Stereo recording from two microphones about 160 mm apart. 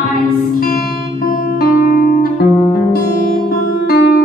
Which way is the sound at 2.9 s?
60° left (ahead or behind).